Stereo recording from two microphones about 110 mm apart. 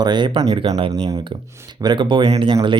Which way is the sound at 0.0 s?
45° right (ahead or behind).